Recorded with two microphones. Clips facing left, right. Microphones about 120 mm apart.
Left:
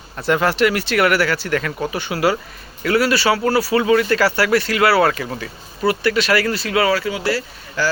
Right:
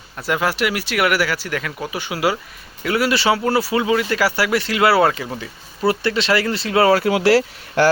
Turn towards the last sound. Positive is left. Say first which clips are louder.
# right 7 dB
turn(degrees=-90)